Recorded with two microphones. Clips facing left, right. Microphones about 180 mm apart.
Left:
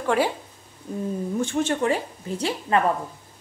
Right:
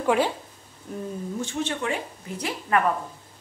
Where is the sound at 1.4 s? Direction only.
50° left (ahead or behind); by 2.8 s 30° left (ahead or behind).